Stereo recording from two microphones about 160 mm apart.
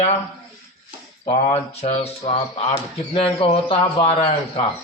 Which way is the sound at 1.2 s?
35° left (ahead or behind).